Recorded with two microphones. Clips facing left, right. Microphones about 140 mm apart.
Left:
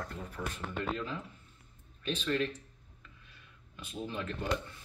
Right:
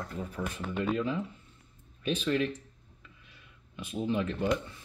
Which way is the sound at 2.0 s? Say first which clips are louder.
Right 4 dB; 10° right (ahead or behind).